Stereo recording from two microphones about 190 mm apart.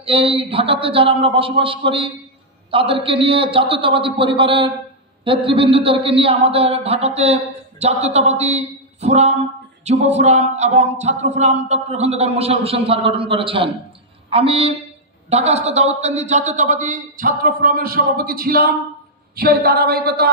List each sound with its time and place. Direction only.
0.0 s a man's voice: 30° right (ahead or behind); by 20.2 s 55° right (ahead or behind)